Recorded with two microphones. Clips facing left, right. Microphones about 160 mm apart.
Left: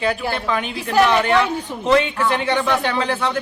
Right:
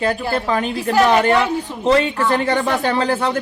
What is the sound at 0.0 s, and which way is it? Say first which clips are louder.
Speech: right 2 dB; 40° right (ahead or behind).